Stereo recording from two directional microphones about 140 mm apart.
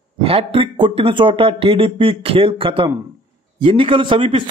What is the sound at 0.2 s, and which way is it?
Speech, 40° right (ahead or behind).